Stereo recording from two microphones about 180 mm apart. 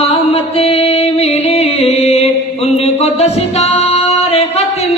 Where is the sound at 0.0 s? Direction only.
35° left (ahead or behind).